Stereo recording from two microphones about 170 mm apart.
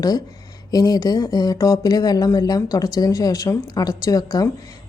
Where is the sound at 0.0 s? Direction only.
20° left (ahead or behind).